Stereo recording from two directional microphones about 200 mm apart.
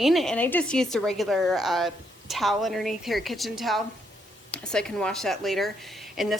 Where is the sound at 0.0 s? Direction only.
Centre (ahead or behind).